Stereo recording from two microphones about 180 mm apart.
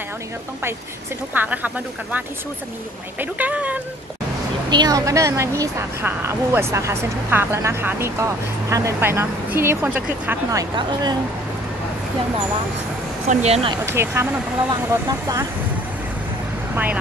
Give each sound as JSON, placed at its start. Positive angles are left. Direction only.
{"t": 1.3, "sound": "a woman's voice", "side_deg": -10}
{"t": 3.2, "sound": "a woman's voice", "side_deg": -10}
{"t": 4.6, "sound": "a woman's voice", "side_deg": -20}
{"t": 13.3, "sound": "speech", "side_deg": -35}
{"t": 13.8, "sound": "a woman's voice", "side_deg": -15}
{"t": 16.7, "sound": "speech", "side_deg": -10}